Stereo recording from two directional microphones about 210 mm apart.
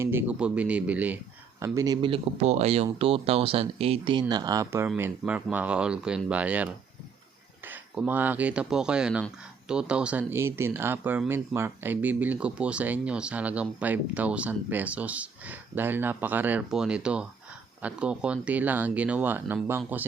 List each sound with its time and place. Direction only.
0.0 s a man's voice: 10° right (ahead or behind)